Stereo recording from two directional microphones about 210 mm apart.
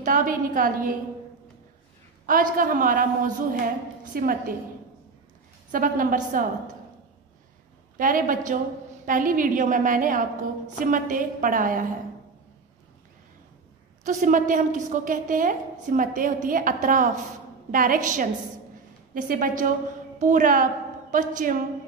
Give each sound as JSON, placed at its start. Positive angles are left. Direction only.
{"t": 0.0, "sound": "a woman's voice", "side_deg": -40}
{"t": 2.2, "sound": "a woman's voice", "side_deg": -40}
{"t": 5.7, "sound": "a woman's voice", "side_deg": -40}
{"t": 8.0, "sound": "a woman's voice", "side_deg": -40}
{"t": 14.0, "sound": "a woman's voice", "side_deg": -35}